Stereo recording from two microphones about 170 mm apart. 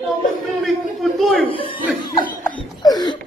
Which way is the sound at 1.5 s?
30° left (ahead or behind).